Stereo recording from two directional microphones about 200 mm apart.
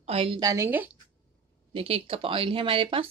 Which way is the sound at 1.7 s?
30° right (ahead or behind).